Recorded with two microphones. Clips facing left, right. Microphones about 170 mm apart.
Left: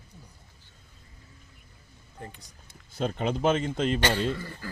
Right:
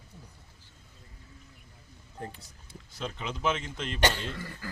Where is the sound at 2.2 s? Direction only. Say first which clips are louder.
Right 2 dB; 30° right (ahead or behind).